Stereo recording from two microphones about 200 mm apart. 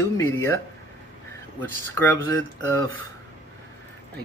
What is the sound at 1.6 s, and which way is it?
Speech, 10° left (ahead or behind).